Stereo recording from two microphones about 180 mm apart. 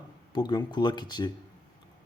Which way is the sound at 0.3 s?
25° left (ahead or behind).